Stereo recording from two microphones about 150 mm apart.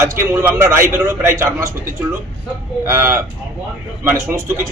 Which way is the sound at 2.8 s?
20° right (ahead or behind).